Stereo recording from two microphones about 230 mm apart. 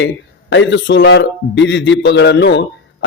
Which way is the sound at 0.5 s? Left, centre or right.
Left.